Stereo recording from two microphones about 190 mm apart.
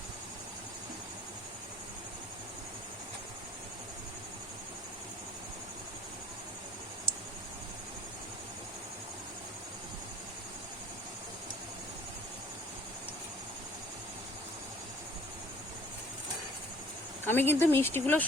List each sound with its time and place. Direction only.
17.2 s speech: 10° left (ahead or behind)